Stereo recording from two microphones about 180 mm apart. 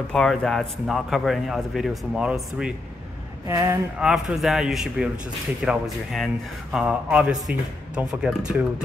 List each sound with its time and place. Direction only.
0.1 s speech: centre (ahead or behind)
3.4 s speech: 15° right (ahead or behind)
4.0 s speech: 5° right (ahead or behind)